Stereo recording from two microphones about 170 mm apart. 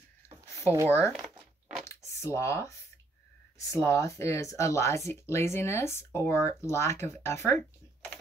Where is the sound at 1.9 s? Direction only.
15° left (ahead or behind).